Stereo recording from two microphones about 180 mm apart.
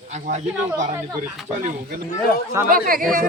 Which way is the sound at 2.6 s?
15° right (ahead or behind).